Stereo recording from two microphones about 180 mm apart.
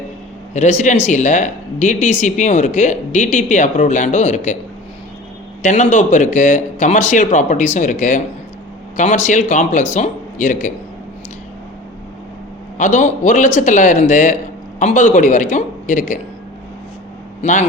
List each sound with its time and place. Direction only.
0.5 s speech: 40° left (ahead or behind)
5.6 s speech: 40° left (ahead or behind)
12.7 s speech: 40° left (ahead or behind)
17.4 s speech: 45° left (ahead or behind)